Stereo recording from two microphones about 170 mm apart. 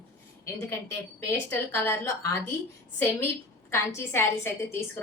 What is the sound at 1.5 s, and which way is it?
Speech, 15° left (ahead or behind).